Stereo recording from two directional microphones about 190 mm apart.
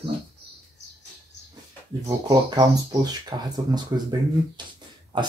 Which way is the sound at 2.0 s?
20° right (ahead or behind).